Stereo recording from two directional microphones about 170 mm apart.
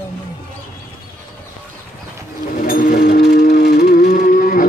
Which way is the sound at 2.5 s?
55° left (ahead or behind).